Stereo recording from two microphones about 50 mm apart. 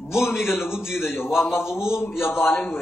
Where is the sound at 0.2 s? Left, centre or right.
Left.